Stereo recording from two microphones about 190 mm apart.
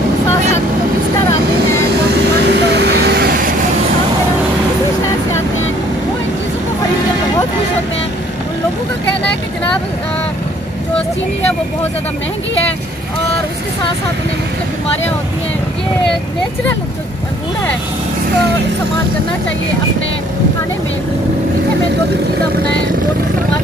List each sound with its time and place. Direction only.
2.5 s vehicle: 60° right (ahead or behind)